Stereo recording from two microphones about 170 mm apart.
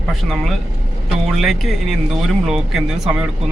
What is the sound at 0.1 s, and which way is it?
Speech, centre (ahead or behind).